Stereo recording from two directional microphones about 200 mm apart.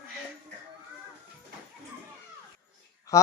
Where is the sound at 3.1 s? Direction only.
15° left (ahead or behind).